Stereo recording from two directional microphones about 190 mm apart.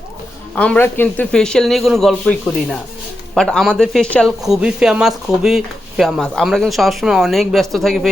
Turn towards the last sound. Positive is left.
turn(degrees=0)  # may be behind; listen again after turning